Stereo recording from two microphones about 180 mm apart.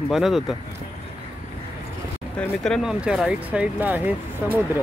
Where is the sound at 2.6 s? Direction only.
Centre (ahead or behind).